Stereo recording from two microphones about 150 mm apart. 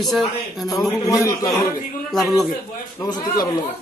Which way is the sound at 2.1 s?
Centre (ahead or behind).